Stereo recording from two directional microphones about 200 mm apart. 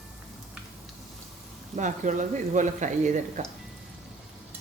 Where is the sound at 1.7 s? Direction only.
40° right (ahead or behind).